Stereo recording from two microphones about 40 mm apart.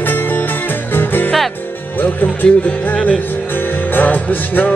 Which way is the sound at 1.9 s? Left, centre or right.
Left.